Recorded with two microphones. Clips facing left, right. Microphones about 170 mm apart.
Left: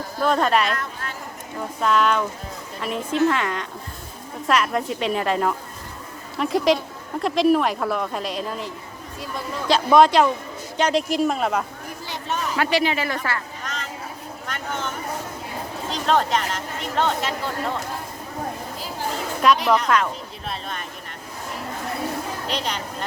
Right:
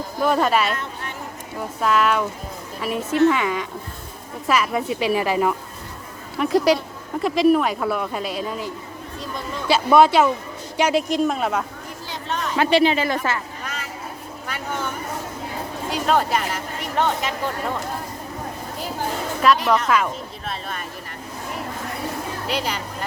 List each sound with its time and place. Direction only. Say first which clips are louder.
0.2 s speech: right 1 dB; 5° right (ahead or behind)
1.8 s speech: even; 5° right (ahead or behind)
12.3 s a sound: even; 5° left (ahead or behind)
12.5 s speech: right 5 dB; 25° right (ahead or behind)
13.7 s vehicle: even; 10° right (ahead or behind)
15.9 s speech: right 1 dB; 10° right (ahead or behind)
19.4 s speech: even; centre (ahead or behind)
22.4 s speech: right 4 dB; 5° right (ahead or behind)